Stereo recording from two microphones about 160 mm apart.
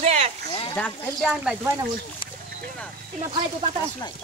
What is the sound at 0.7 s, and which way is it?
Speech, 10° left (ahead or behind).